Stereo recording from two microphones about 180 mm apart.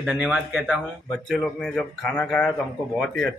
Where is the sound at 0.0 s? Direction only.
5° right (ahead or behind).